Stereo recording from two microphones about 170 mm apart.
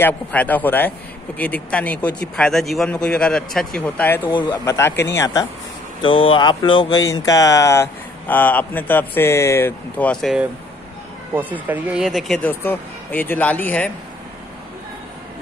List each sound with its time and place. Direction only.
0.0 s speech: 10° left (ahead or behind)
4.3 s speech: 25° left (ahead or behind)
4.6 s speech: 15° left (ahead or behind)
11.3 s speech: 10° right (ahead or behind); by 13.8 s 10° left (ahead or behind)